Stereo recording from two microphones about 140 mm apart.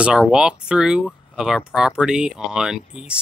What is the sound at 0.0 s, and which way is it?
Speech, 5° right (ahead or behind).